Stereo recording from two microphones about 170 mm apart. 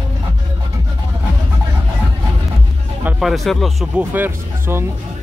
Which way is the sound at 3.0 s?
5° right (ahead or behind).